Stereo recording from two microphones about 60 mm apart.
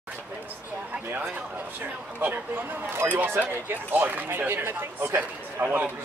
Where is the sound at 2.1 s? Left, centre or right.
Right.